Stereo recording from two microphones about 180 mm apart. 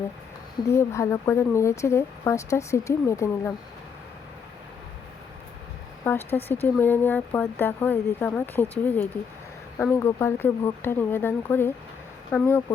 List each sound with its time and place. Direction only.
0.7 s speech: 15° left (ahead or behind)
6.1 s speech: 10° left (ahead or behind)